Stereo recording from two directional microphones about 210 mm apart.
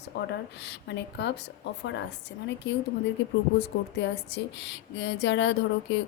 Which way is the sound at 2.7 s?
60° left (ahead or behind).